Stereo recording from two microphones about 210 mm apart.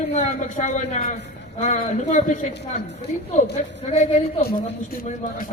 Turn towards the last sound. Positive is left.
turn(degrees=30)  # may be behind; listen again after turning